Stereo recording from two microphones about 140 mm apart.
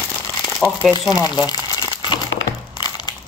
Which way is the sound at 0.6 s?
10° right (ahead or behind).